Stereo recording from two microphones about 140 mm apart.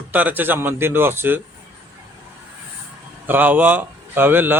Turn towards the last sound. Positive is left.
turn(degrees=-15)  # may be behind; listen again after turning